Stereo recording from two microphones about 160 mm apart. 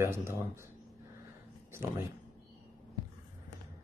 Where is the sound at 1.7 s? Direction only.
15° right (ahead or behind).